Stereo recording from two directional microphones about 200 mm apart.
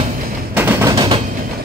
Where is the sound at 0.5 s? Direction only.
10° right (ahead or behind).